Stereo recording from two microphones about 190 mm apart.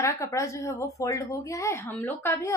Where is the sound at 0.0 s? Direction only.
15° left (ahead or behind).